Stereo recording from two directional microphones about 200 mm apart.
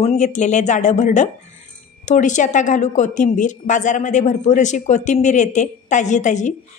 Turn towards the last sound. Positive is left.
turn(degrees=35)  # may be behind; listen again after turning